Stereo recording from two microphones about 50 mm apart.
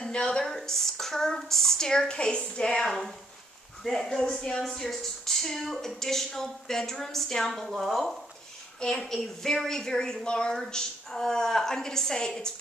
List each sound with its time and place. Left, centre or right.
0.0 s a woman's voice: centre
7.7 s speech: centre
8.7 s speech: centre
10.5 s speech: centre